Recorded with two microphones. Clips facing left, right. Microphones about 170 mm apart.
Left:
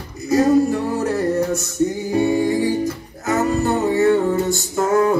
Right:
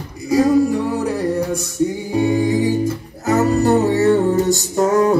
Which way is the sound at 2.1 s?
15° right (ahead or behind).